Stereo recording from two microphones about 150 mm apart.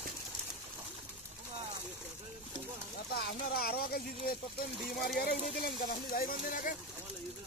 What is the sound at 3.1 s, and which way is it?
Speech, 90° left.